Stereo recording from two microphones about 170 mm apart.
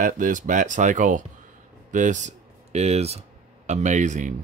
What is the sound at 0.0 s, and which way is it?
Speech, 50° right (ahead or behind).